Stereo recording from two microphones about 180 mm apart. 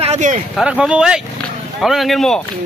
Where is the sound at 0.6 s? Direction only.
5° right (ahead or behind).